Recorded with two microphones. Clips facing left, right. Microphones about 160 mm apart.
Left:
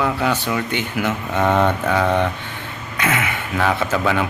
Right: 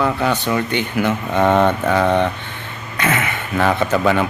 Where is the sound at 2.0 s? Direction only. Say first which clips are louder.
Right 2 dB; 20° right (ahead or behind).